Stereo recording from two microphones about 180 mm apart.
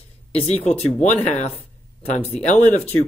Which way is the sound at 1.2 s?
40° left (ahead or behind).